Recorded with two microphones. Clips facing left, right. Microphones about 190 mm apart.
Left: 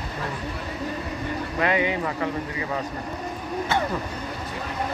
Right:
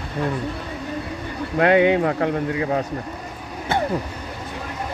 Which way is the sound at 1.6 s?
65° right (ahead or behind).